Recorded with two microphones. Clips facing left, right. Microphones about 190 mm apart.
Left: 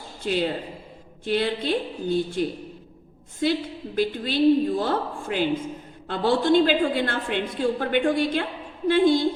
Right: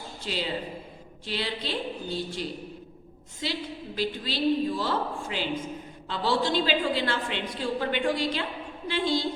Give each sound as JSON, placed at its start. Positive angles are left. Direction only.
{"t": 0.2, "sound": "a man's voice", "side_deg": 55}